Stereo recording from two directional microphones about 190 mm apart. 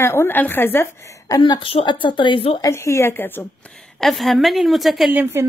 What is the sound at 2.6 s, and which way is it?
Speech, 15° left (ahead or behind).